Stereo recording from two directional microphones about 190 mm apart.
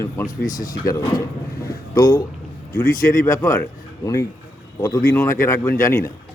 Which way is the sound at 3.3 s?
15° left (ahead or behind).